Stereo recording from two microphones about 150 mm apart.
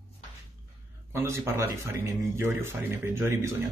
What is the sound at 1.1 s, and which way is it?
Speech, 15° right (ahead or behind).